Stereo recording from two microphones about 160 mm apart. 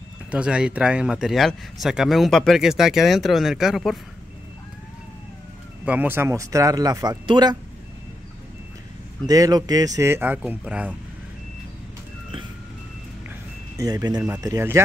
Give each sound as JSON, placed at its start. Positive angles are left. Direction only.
{"t": 0.3, "sound": "speech", "side_deg": -5}
{"t": 5.9, "sound": "speech", "side_deg": -10}
{"t": 9.2, "sound": "speech", "side_deg": -25}
{"t": 13.7, "sound": "speech", "side_deg": -20}